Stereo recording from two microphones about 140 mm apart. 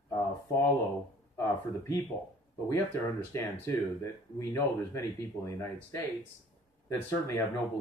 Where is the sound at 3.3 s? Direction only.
20° left (ahead or behind).